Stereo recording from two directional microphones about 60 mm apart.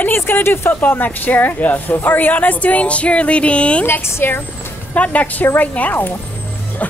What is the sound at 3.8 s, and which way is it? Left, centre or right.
Speech, left.